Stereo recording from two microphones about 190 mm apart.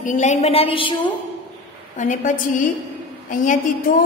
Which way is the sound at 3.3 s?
45° left (ahead or behind).